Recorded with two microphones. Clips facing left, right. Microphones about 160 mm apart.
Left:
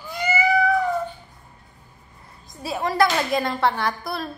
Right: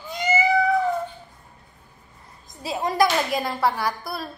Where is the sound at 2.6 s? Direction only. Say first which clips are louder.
Left 1 dB; 20° right (ahead or behind).